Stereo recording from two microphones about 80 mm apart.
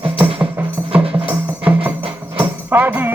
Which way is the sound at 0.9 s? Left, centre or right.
Centre.